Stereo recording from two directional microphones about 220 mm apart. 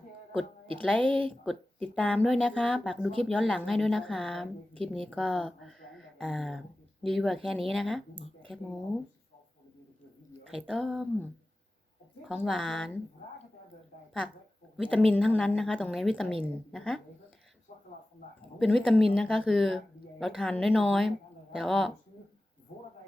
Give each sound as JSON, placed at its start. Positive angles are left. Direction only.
{"t": 0.9, "sound": "speech", "side_deg": 5}
{"t": 10.5, "sound": "speech", "side_deg": 0}
{"t": 14.8, "sound": "speech", "side_deg": 5}
{"t": 17.7, "sound": "a sound", "side_deg": 30}
{"t": 18.6, "sound": "speech", "side_deg": 0}